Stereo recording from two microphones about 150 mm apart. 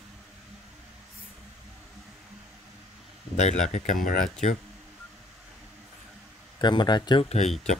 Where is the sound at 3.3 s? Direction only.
50° left (ahead or behind).